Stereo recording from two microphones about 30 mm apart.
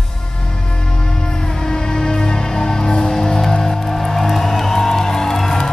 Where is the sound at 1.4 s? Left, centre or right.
Centre.